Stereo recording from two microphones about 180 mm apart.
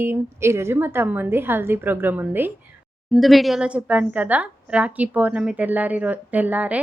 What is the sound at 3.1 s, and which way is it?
A woman's voice, centre (ahead or behind).